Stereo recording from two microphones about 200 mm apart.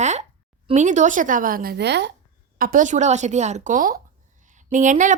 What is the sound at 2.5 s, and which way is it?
Speech, 45° right (ahead or behind).